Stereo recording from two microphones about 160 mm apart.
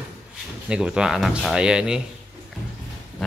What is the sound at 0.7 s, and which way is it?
Speech, 5° right (ahead or behind).